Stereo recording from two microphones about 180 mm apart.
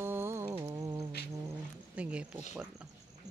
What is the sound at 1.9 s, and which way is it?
Speech, 5° right (ahead or behind).